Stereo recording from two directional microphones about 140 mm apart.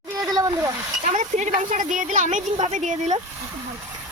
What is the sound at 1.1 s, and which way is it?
Speech, 55° right (ahead or behind).